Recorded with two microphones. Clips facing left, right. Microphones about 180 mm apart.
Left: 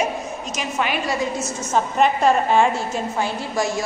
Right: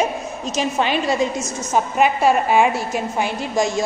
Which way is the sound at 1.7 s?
5° right (ahead or behind).